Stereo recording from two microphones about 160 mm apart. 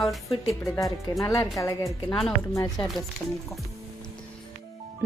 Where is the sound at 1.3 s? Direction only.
20° left (ahead or behind).